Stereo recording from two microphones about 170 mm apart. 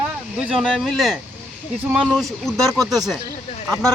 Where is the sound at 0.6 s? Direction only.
5° left (ahead or behind).